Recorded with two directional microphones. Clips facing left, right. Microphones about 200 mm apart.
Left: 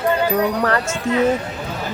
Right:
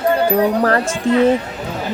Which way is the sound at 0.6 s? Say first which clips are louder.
Right 4 dB; 35° right (ahead or behind).